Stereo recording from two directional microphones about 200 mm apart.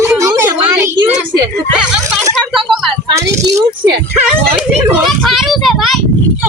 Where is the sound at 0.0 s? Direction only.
15° right (ahead or behind).